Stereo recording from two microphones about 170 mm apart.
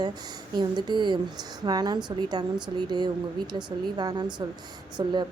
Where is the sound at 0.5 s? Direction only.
25° right (ahead or behind).